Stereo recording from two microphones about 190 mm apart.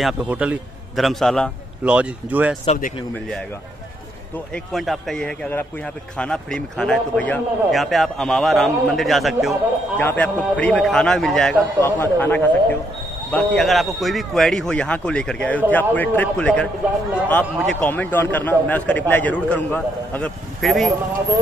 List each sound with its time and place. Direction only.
0.0 s a man's voice: 5° right (ahead or behind)
2.6 s speech: 35° left (ahead or behind)
4.7 s a man's voice: centre (ahead or behind)